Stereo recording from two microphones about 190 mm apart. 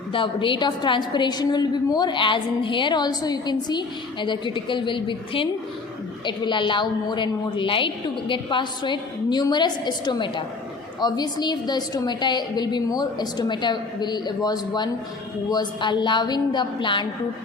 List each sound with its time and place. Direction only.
0.1 s a woman's voice: 25° left (ahead or behind)